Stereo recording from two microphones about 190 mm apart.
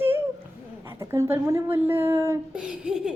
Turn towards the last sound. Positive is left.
turn(degrees=-5)  # may be behind; listen again after turning